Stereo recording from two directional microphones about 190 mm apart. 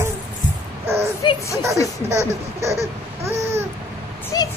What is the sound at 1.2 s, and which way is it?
Speech, 25° left (ahead or behind).